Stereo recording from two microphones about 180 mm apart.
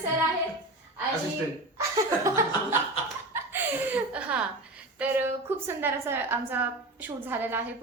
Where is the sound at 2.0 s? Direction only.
15° right (ahead or behind).